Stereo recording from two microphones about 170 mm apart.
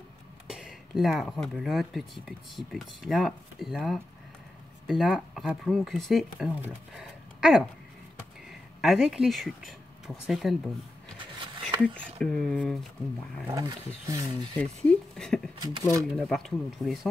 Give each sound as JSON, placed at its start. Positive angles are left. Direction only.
{"t": 0.5, "sound": "speech", "side_deg": 0}
{"t": 11.8, "sound": "speech", "side_deg": 5}
{"t": 13.5, "sound": "speech", "side_deg": -20}
{"t": 14.6, "sound": "speech", "side_deg": 5}
{"t": 15.6, "sound": "speech", "side_deg": -25}
{"t": 16.3, "sound": "speech", "side_deg": 0}